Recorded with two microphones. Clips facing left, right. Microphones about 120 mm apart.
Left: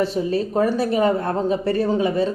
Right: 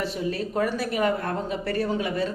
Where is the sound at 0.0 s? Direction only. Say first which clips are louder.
Left 7 dB; 25° left (ahead or behind).